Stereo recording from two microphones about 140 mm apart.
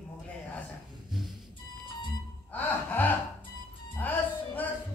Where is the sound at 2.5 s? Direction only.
10° left (ahead or behind).